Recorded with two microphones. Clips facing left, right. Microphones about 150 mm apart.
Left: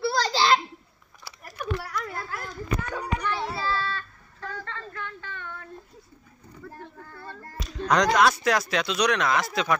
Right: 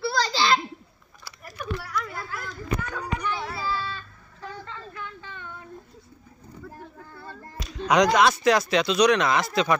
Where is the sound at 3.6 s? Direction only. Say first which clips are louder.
Left 1 dB; 15° right (ahead or behind).